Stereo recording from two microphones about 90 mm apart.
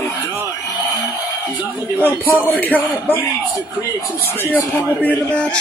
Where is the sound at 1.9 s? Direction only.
20° left (ahead or behind).